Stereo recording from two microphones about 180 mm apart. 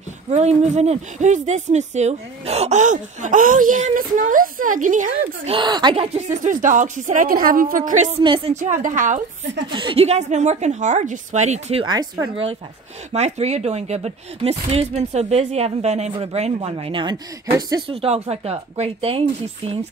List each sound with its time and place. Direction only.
0.3 s speech: 40° right (ahead or behind)
5.5 s speech: 25° right (ahead or behind)
6.0 s speech: 40° right (ahead or behind)
8.2 s speech: 25° right (ahead or behind)
8.5 s speech: 40° right (ahead or behind)
9.7 s speech: 25° right (ahead or behind)
11.8 s speech: 25° right (ahead or behind)
13.1 s speech: 35° right (ahead or behind); by 17.9 s 20° right (ahead or behind)
17.9 s speech: 35° right (ahead or behind)